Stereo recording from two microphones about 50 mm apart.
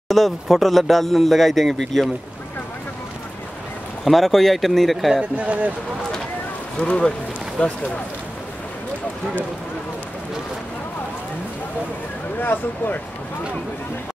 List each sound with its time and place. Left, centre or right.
0.1 s speech: centre
4.0 s speech: centre
5.2 s speech: right
6.8 s speech: centre
12.4 s speech: left